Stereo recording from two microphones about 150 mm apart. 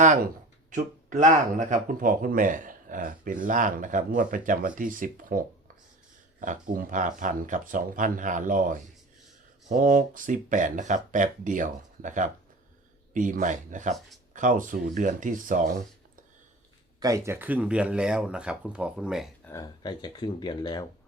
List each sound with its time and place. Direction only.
0.0 s speech: 55° right (ahead or behind)
17.0 s speech: 20° right (ahead or behind); by 19.3 s centre (ahead or behind)
19.5 s speech: 25° left (ahead or behind)